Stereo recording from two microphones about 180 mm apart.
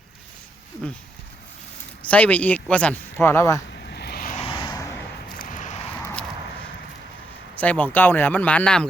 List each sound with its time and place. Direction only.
2.0 s speech: 10° left (ahead or behind)
3.8 s vehicle: 65° left (ahead or behind)
4.4 s vehicle: 25° left (ahead or behind)
5.4 s a sound: 45° left (ahead or behind)
6.0 s a sound: 10° left (ahead or behind)
7.6 s speech: 10° left (ahead or behind)